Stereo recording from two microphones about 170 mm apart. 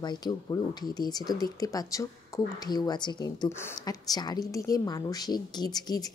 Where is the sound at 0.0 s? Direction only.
25° left (ahead or behind).